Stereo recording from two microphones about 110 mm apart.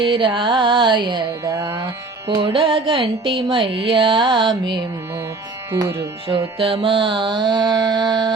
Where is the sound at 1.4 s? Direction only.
25° right (ahead or behind).